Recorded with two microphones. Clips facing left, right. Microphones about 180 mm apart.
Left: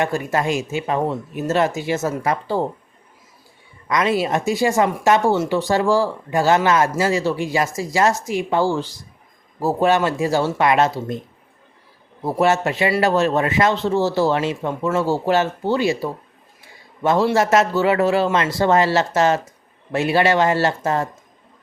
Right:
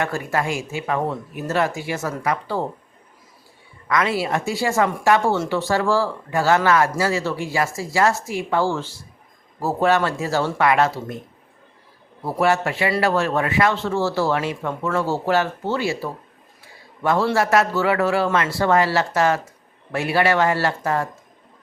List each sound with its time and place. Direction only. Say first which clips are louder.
0.0 s speech: left 3 dB; 20° left (ahead or behind)
3.8 s speech: left 2 dB; 20° left (ahead or behind)
12.2 s a man's voice: left 2 dB; 20° left (ahead or behind)